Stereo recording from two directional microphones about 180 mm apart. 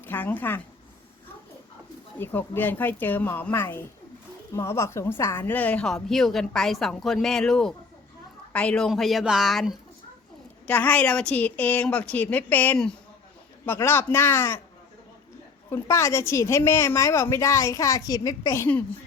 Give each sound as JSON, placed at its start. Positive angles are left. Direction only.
{"t": 0.0, "sound": "speech", "side_deg": 10}
{"t": 2.1, "sound": "a woman's voice", "side_deg": 10}
{"t": 15.7, "sound": "a woman's voice", "side_deg": 15}